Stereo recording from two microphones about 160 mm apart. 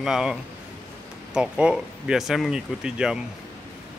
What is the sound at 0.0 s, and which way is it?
Speech, 5° right (ahead or behind).